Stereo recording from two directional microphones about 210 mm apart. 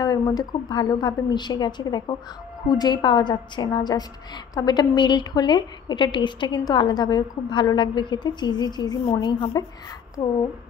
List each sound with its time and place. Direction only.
0.0 s a woman's voice: 20° left (ahead or behind)